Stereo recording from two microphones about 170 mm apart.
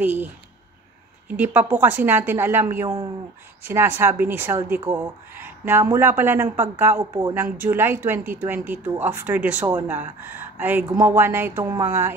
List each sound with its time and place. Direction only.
0.0 s speech: 10° right (ahead or behind)
1.3 s speech: 10° right (ahead or behind)
7.4 s speech: 55° right (ahead or behind)
7.7 s speech: 10° right (ahead or behind)